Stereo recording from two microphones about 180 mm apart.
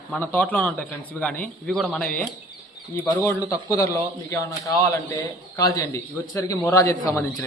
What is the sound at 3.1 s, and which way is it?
A man's voice, 15° left (ahead or behind).